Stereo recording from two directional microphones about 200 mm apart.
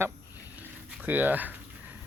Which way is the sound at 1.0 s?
10° right (ahead or behind).